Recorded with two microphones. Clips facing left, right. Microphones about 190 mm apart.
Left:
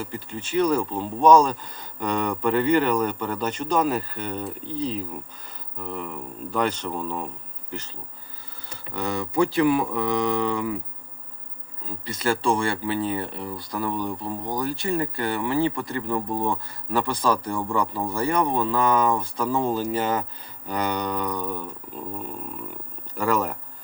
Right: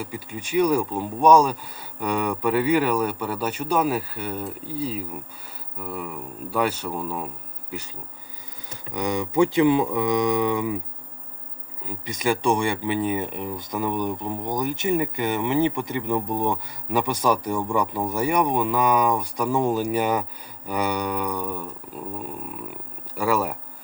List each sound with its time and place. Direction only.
0.0 s speech: 10° right (ahead or behind)
8.9 s speech: 15° right (ahead or behind)
11.8 s speech: 15° right (ahead or behind)
22.7 s speech: 10° right (ahead or behind)